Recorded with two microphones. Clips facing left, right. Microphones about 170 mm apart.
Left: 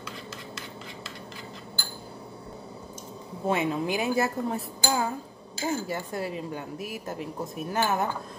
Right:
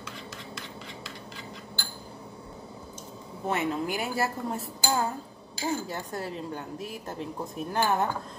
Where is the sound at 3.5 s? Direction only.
15° left (ahead or behind).